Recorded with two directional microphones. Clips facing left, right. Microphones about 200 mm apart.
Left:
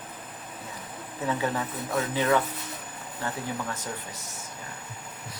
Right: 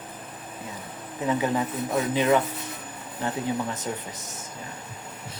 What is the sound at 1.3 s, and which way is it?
Speech, 20° right (ahead or behind).